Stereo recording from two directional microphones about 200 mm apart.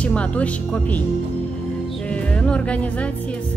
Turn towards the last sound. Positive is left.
turn(degrees=5)  # may be behind; listen again after turning